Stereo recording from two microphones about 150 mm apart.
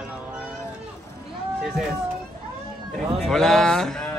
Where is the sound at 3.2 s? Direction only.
5° left (ahead or behind).